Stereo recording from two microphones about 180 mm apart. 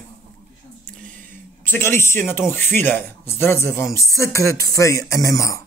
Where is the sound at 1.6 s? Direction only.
10° left (ahead or behind).